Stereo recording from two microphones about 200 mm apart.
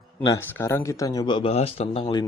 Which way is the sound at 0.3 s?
15° left (ahead or behind).